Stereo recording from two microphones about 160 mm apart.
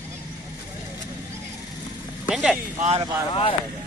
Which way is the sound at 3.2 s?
30° left (ahead or behind).